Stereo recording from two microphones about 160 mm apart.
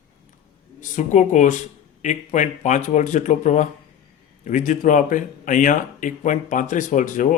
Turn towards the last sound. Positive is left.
turn(degrees=55)  # may be behind; listen again after turning